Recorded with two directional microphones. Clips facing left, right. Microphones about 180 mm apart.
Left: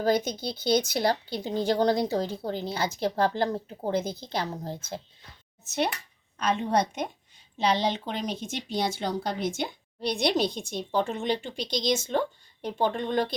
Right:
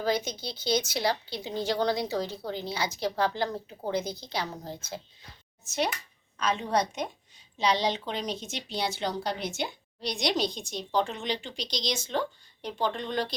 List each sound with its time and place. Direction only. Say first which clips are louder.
0.0 s speech: left 4 dB; 55° left (ahead or behind)
6.4 s a woman's voice: left 2 dB; 55° left (ahead or behind)